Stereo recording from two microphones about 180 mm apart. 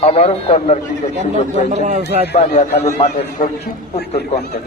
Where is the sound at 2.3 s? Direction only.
35° left (ahead or behind).